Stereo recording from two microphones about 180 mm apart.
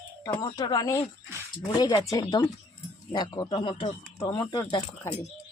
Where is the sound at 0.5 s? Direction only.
20° left (ahead or behind).